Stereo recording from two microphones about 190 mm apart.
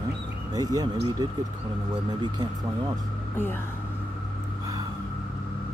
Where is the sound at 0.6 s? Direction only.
20° right (ahead or behind).